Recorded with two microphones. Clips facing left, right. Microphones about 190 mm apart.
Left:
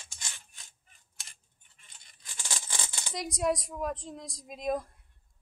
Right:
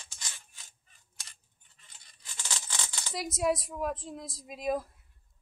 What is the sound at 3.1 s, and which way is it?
A woman's voice, centre (ahead or behind).